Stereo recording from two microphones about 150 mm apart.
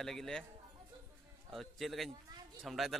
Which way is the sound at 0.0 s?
5° left (ahead or behind).